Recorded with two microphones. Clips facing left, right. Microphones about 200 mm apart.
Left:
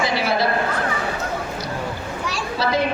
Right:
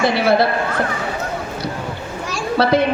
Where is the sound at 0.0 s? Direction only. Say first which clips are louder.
Right 6 dB; 60° right (ahead or behind).